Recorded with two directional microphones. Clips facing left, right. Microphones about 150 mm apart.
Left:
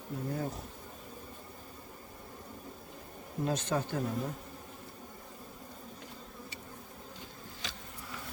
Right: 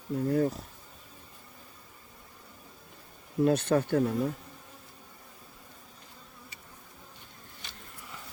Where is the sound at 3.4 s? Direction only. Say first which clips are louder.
Right 8 dB; 60° right (ahead or behind).